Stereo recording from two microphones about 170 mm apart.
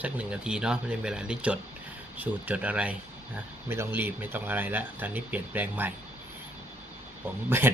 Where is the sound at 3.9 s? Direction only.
10° right (ahead or behind).